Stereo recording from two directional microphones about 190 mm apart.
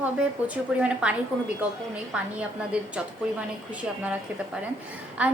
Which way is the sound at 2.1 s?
5° right (ahead or behind).